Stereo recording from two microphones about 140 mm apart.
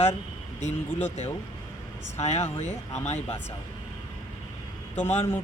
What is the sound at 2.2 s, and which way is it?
Speech, 50° left (ahead or behind).